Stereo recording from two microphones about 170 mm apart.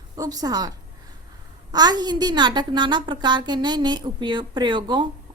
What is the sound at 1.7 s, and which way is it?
A woman's voice, 25° right (ahead or behind).